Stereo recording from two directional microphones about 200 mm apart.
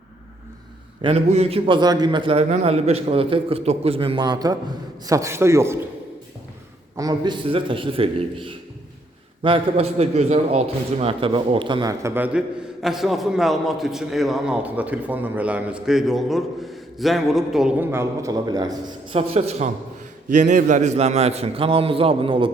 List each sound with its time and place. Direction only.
1.0 s a man's voice: 30° right (ahead or behind); by 5.8 s 15° right (ahead or behind)
6.9 s a man's voice: 20° right (ahead or behind); by 17.8 s centre (ahead or behind)
17.9 s a man's voice: 15° right (ahead or behind)